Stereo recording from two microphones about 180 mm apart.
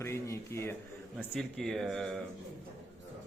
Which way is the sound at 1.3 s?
Centre (ahead or behind).